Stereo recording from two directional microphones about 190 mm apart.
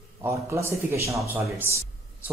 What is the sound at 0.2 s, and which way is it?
Speech, 15° right (ahead or behind).